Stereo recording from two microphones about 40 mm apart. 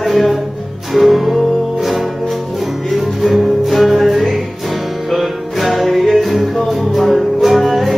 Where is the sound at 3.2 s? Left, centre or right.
Centre.